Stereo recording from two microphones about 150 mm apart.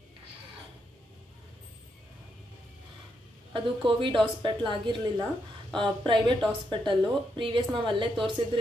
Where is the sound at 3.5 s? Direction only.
35° right (ahead or behind).